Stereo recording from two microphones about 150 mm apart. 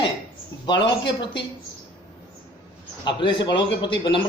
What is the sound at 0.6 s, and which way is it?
Speech, 30° left (ahead or behind).